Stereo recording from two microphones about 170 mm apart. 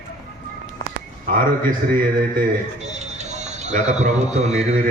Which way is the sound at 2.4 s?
45° right (ahead or behind).